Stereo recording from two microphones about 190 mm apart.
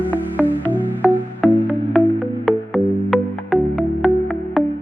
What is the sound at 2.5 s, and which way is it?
Music, centre (ahead or behind).